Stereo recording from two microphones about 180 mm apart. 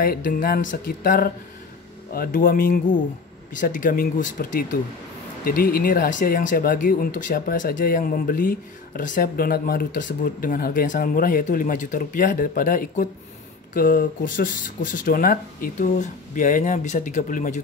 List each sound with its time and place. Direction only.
0.0 s speech: 55° left (ahead or behind)